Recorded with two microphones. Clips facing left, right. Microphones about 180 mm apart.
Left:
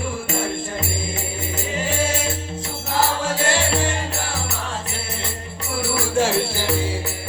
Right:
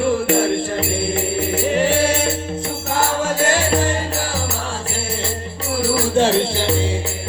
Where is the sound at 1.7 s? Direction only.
65° right (ahead or behind).